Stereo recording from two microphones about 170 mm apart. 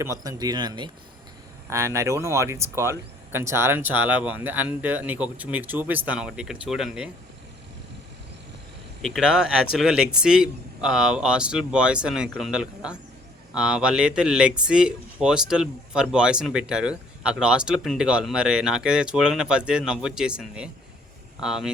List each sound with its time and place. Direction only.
0.0 s speech: 20° right (ahead or behind); by 7.1 s 5° right (ahead or behind)
9.0 s speech: centre (ahead or behind)